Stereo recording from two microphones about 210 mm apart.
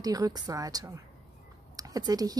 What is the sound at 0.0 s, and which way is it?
Speech, 15° right (ahead or behind).